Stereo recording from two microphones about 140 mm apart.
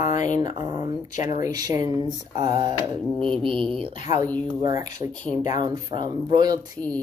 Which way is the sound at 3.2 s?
40° right (ahead or behind).